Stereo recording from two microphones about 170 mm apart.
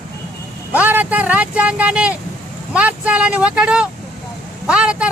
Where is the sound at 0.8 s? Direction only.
10° right (ahead or behind).